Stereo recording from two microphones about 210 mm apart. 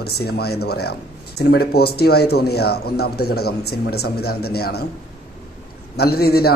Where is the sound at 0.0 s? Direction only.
50° left (ahead or behind).